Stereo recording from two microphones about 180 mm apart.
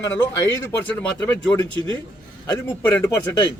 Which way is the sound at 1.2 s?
20° left (ahead or behind).